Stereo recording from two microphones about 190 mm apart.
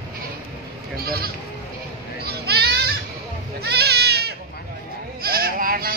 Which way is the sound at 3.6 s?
60° right (ahead or behind).